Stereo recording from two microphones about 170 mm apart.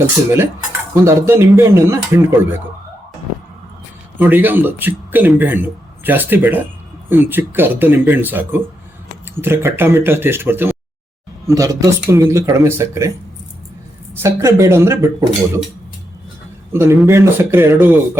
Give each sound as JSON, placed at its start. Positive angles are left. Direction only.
{"t": 0.0, "sound": "a man's voice", "side_deg": -15}
{"t": 4.2, "sound": "a man's voice", "side_deg": -10}
{"t": 14.1, "sound": "a man's voice", "side_deg": -15}
{"t": 16.7, "sound": "a man's voice", "side_deg": -15}